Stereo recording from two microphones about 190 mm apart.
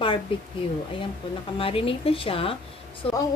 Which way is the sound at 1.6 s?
30° left (ahead or behind).